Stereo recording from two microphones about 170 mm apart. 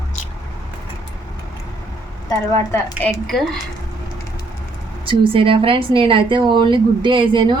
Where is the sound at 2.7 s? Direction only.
10° left (ahead or behind).